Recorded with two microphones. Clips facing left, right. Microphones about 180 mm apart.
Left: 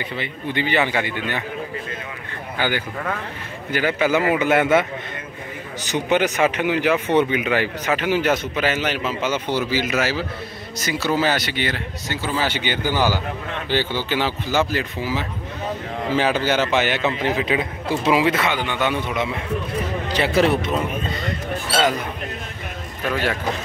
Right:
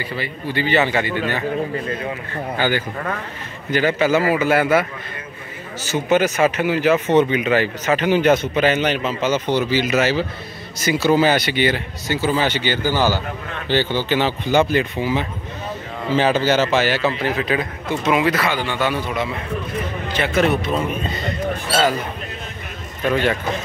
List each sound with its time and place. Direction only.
0.0 s a man's voice: 20° left (ahead or behind)
1.0 s a man's voice: 45° right (ahead or behind)
2.6 s a man's voice: 10° left (ahead or behind)
5.9 s speech: 15° left (ahead or behind); by 12.4 s centre (ahead or behind)
12.4 s a man's voice: 15° left (ahead or behind)
20.1 s a man's voice: 30° left (ahead or behind)